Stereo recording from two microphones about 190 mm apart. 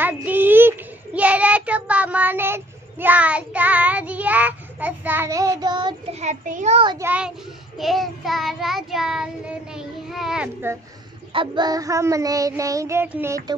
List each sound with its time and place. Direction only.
0.0 s child singing: 10° right (ahead or behind)
6.1 s a child's voice: 40° right (ahead or behind)
7.0 s child singing: 10° right (ahead or behind)
11.3 s child singing: 20° right (ahead or behind)